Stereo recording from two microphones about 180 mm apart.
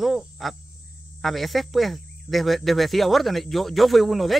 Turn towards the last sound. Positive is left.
turn(degrees=0)  # may be behind; listen again after turning